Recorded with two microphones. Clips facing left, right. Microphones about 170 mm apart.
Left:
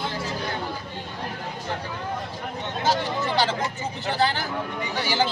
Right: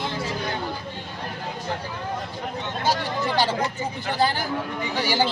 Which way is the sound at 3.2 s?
15° right (ahead or behind).